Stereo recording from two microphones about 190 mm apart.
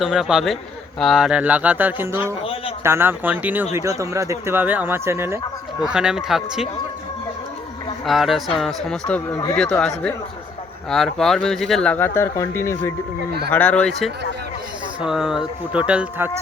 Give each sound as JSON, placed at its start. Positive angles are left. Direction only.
{"t": 0.0, "sound": "speech", "side_deg": -5}
{"t": 2.4, "sound": "a sound", "side_deg": 30}
{"t": 2.8, "sound": "speech", "side_deg": -10}
{"t": 8.0, "sound": "speech", "side_deg": 0}